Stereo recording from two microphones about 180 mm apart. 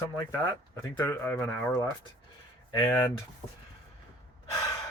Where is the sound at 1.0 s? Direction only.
10° left (ahead or behind).